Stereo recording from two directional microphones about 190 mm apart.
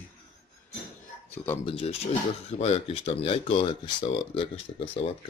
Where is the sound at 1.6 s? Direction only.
30° left (ahead or behind).